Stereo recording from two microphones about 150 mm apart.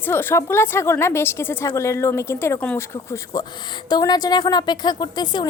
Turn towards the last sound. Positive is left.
turn(degrees=30)  # may be behind; listen again after turning